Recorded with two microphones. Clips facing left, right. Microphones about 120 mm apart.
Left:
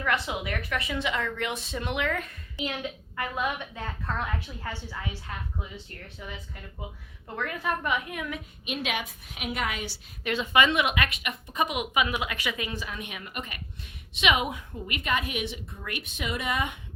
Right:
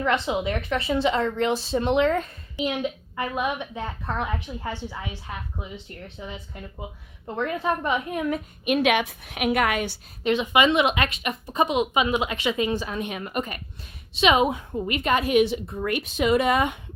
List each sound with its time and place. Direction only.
0.0 s a woman's voice: 25° right (ahead or behind)
6.1 s speech: 25° right (ahead or behind)
8.6 s a woman's voice: 60° right (ahead or behind)
10.2 s a woman's voice: 20° right (ahead or behind); by 16.2 s 40° right (ahead or behind)
16.2 s speech: 80° right